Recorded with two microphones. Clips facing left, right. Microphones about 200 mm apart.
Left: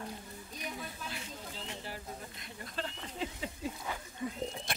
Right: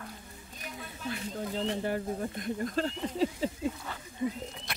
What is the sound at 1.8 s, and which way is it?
Speech, 55° right (ahead or behind).